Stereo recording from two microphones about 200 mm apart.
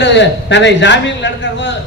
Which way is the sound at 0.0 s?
60° left (ahead or behind).